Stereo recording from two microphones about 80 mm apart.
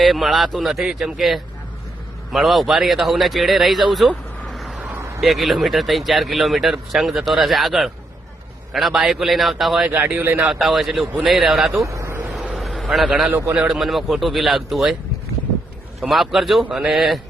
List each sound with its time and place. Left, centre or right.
0.0 s speech: centre
4.4 s vehicle: centre
4.9 s a sound: right
5.2 s speech: centre
9.9 s speech: right
10.4 s speech: centre
11.8 s speech: right
12.5 s a sound: centre
13.1 s a man's voice: centre
13.7 s speech: centre
16.0 s speech: centre